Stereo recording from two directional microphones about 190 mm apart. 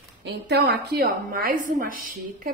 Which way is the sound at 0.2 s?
60° right (ahead or behind).